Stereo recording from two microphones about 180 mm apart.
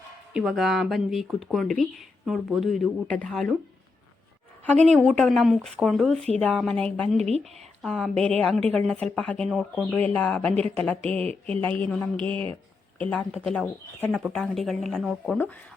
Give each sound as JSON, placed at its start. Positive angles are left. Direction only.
{"t": 0.3, "sound": "speech", "side_deg": 0}
{"t": 5.0, "sound": "speech", "side_deg": 0}
{"t": 7.2, "sound": "speech", "side_deg": -35}
{"t": 7.8, "sound": "speech", "side_deg": 5}